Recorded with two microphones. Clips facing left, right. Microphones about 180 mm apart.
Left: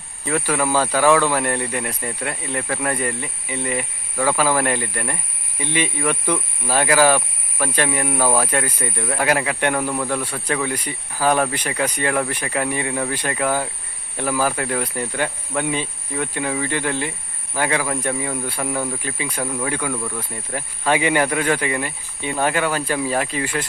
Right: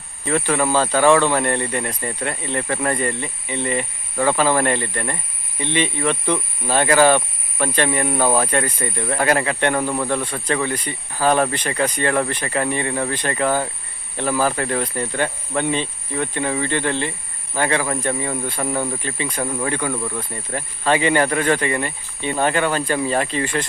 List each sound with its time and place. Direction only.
0.3 s speech: 5° left (ahead or behind)
19.4 s speech: 10° right (ahead or behind)
19.6 s speech: 5° left (ahead or behind)
19.9 s speech: 5° right (ahead or behind)
20.3 s speech: 10° left (ahead or behind)